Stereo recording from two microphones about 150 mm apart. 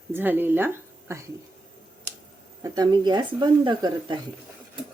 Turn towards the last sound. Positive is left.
turn(degrees=-30)  # may be behind; listen again after turning